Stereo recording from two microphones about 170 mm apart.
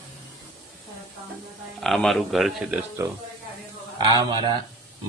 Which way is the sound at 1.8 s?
Centre (ahead or behind).